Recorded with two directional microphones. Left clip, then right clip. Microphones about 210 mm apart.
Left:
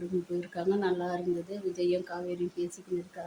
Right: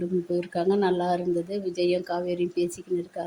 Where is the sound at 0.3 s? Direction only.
25° right (ahead or behind).